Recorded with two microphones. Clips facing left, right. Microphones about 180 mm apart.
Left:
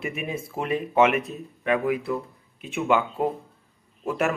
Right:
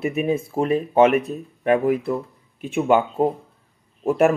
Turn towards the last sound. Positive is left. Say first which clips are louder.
# right 8 dB
turn(degrees=-50)  # may be behind; listen again after turning